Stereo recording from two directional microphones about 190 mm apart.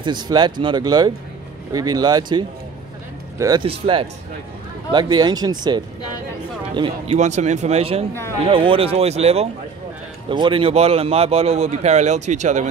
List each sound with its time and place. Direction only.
0.0 s speech: 25° right (ahead or behind)
7.2 s speech: 35° right (ahead or behind)